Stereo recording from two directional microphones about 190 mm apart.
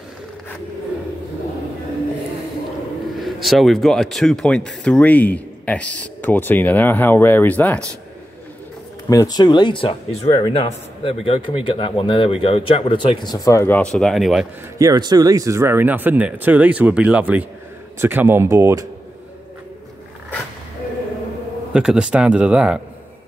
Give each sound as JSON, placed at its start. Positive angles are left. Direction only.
{"t": 3.2, "sound": "speech", "side_deg": 0}
{"t": 9.1, "sound": "a man's voice", "side_deg": 20}
{"t": 14.8, "sound": "speech", "side_deg": -20}
{"t": 21.7, "sound": "speech", "side_deg": -5}